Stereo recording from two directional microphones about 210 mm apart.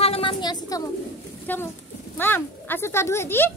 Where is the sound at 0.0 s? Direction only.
25° left (ahead or behind).